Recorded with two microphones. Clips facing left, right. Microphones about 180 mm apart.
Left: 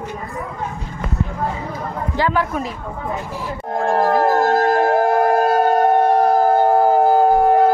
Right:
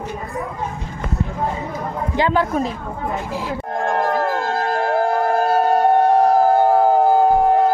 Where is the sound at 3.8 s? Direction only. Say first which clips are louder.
Left 4 dB; 35° left (ahead or behind).